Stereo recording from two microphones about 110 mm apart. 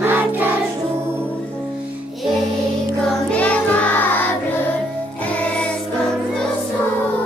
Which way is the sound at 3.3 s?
10° left (ahead or behind).